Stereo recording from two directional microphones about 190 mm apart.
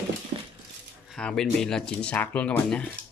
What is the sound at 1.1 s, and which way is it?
Speech, 5° left (ahead or behind).